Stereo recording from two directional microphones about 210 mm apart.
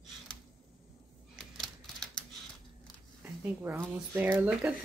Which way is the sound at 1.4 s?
Centre (ahead or behind).